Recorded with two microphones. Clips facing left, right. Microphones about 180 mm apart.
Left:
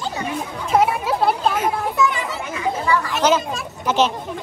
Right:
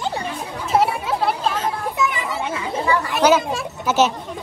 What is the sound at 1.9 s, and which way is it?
Children playing, 20° right (ahead or behind).